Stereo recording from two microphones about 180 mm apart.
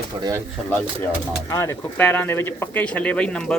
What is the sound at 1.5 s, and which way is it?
Speech, 10° left (ahead or behind).